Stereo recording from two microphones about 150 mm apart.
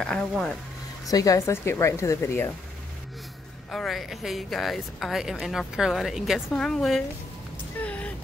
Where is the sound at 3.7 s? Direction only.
Centre (ahead or behind).